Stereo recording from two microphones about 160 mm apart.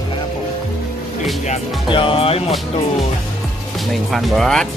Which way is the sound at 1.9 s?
35° left (ahead or behind).